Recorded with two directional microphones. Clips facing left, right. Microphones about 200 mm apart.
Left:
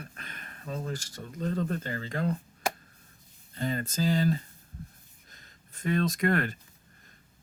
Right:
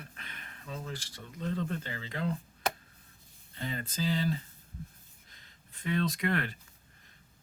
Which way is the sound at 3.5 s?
45° left (ahead or behind).